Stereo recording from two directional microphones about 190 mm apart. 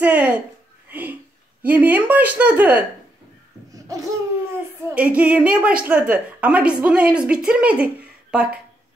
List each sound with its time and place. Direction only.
0.0 s a sound: 10° right (ahead or behind)
1.6 s a woman's voice: 10° right (ahead or behind)
3.7 s laughter: 15° right (ahead or behind)
4.8 s a woman's voice: 5° right (ahead or behind)